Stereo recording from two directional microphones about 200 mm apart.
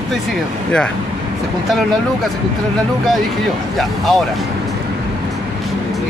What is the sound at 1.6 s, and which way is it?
Speech, centre (ahead or behind).